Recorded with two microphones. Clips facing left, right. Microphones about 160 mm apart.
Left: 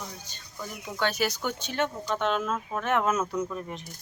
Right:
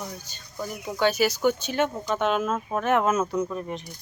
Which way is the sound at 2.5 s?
45° right (ahead or behind).